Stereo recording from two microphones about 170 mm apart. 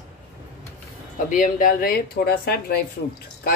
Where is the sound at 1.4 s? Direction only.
55° left (ahead or behind).